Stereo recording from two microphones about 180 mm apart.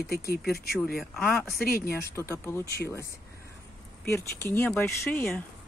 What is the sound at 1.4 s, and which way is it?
Speech, 55° left (ahead or behind).